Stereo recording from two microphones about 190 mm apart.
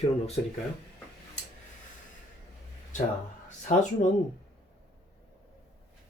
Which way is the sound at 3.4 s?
40° left (ahead or behind).